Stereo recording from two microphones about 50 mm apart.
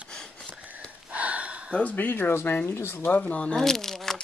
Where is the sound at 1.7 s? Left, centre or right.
Left.